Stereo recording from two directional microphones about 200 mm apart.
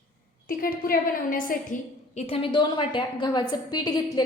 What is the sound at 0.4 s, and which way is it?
A woman's voice, 45° left (ahead or behind).